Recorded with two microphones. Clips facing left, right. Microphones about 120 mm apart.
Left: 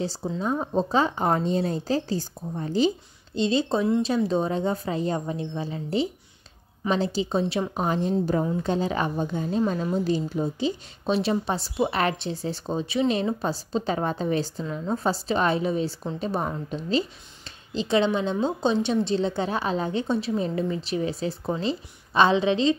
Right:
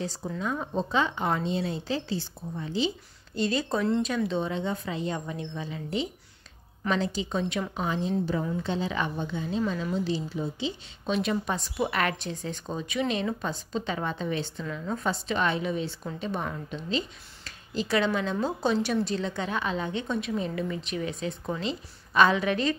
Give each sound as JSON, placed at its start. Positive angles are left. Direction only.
{"t": 0.0, "sound": "a woman's voice", "side_deg": 30}
{"t": 3.3, "sound": "a woman's voice", "side_deg": 25}
{"t": 7.7, "sound": "a woman's voice", "side_deg": 45}